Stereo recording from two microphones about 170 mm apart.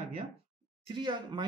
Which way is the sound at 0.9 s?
25° right (ahead or behind).